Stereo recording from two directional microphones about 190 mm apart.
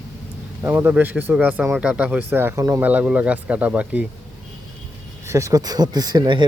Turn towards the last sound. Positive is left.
turn(degrees=-25)  # may be behind; listen again after turning